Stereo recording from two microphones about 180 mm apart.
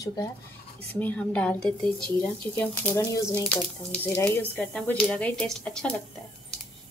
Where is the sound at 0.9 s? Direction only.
10° left (ahead or behind).